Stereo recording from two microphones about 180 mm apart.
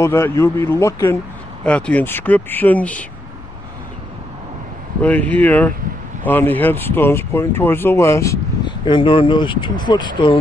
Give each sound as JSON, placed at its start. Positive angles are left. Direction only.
{"t": 0.0, "sound": "speech", "side_deg": 15}
{"t": 5.0, "sound": "speech", "side_deg": 10}